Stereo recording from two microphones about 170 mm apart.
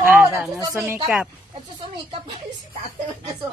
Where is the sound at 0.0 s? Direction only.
15° right (ahead or behind).